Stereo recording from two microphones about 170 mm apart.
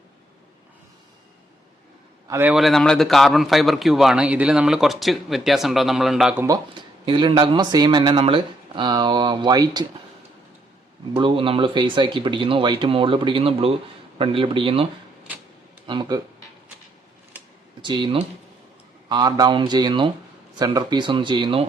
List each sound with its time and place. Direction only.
2.2 s a man's voice: 15° right (ahead or behind)
7.0 s speech: 30° right (ahead or behind)
11.1 s speech: 30° right (ahead or behind)
15.9 s speech: 25° right (ahead or behind)
17.8 s speech: 30° right (ahead or behind)